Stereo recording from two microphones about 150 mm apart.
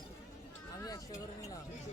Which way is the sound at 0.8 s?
25° left (ahead or behind).